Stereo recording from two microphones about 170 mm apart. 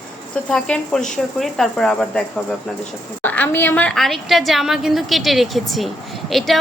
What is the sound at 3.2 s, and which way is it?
A woman's voice, 10° left (ahead or behind).